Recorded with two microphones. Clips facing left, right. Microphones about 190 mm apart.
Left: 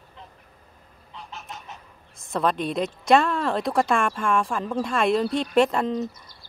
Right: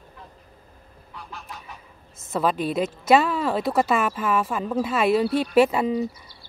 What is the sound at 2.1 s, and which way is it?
A woman's voice, 5° right (ahead or behind).